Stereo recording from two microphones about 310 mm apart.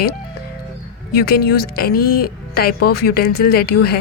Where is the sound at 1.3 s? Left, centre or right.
Left.